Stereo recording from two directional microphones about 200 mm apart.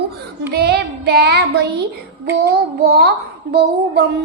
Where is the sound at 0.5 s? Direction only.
55° right (ahead or behind).